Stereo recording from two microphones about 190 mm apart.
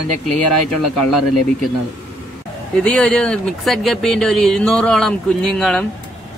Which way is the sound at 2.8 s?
5° left (ahead or behind).